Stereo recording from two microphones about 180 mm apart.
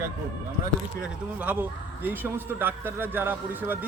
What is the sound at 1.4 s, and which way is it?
A man's voice, 10° right (ahead or behind).